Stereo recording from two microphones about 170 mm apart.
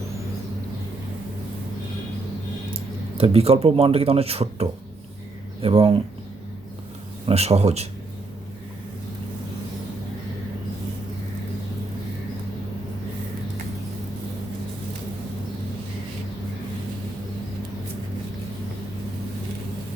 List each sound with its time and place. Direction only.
3.2 s speech: 35° right (ahead or behind)
7.3 s speech: 35° right (ahead or behind)